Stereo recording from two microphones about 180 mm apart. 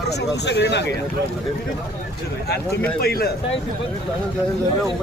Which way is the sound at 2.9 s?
60° left (ahead or behind).